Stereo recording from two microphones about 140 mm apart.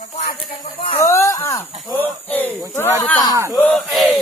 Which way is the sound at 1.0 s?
20° left (ahead or behind).